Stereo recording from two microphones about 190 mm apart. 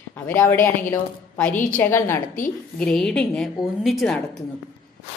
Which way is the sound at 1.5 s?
45° left (ahead or behind).